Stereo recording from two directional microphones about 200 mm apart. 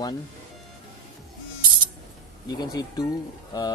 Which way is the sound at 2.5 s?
20° left (ahead or behind).